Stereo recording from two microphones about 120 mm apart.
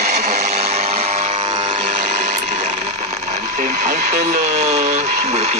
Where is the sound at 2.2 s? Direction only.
90° right; by 5.5 s 70° right (ahead or behind).